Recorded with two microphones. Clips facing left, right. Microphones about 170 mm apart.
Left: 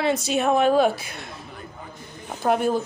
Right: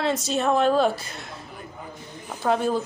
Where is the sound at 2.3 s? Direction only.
15° left (ahead or behind).